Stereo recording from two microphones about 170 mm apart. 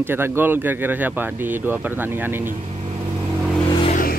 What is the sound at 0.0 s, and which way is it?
Speech, 15° right (ahead or behind).